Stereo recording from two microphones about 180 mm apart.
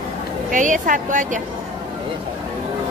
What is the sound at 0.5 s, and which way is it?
Speech, 45° right (ahead or behind).